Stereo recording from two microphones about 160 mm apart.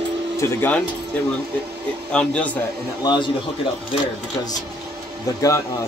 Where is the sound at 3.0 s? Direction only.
25° left (ahead or behind).